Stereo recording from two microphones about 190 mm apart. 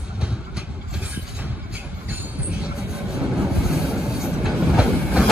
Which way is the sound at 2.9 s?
5° right (ahead or behind).